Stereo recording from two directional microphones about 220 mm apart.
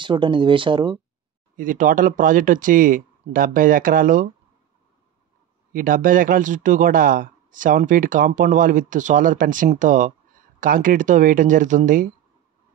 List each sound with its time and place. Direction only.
0.0 s speech: 20° right (ahead or behind)
1.6 s speech: 35° right (ahead or behind)
5.7 s speech: 40° right (ahead or behind)